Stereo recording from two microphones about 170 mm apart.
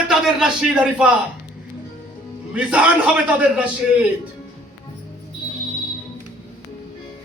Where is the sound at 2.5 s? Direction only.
5° right (ahead or behind).